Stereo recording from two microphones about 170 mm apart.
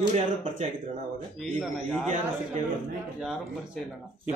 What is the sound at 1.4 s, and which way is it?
Speech, 5° left (ahead or behind).